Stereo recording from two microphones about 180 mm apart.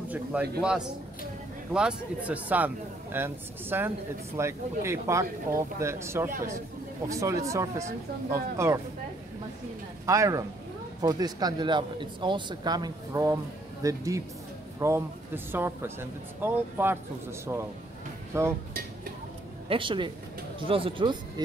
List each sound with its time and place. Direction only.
0.1 s a man's voice: 5° right (ahead or behind)
10.0 s speech: 15° right (ahead or behind)
19.7 s speech: 25° right (ahead or behind)